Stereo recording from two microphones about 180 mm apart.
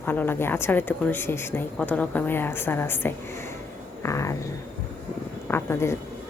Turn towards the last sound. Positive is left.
turn(degrees=15)  # may be behind; listen again after turning